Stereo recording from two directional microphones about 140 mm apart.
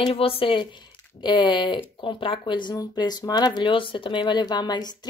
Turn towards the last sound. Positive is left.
turn(degrees=30)  # may be behind; listen again after turning